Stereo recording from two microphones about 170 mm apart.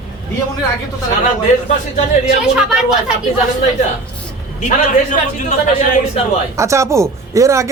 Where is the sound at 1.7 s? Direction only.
40° left (ahead or behind).